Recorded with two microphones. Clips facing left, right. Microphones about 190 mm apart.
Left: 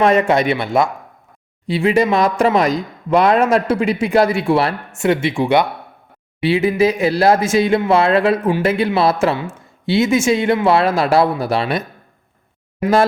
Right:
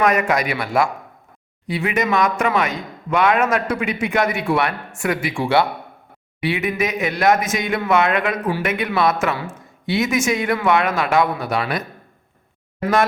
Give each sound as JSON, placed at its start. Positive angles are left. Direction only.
{"t": 0.0, "sound": "speech", "side_deg": 30}